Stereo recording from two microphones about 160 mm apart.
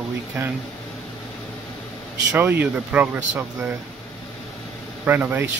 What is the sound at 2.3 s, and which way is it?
Speech, 10° right (ahead or behind).